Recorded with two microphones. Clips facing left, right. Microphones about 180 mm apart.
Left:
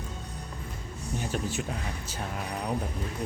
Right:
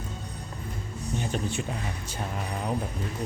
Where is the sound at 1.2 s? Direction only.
5° left (ahead or behind).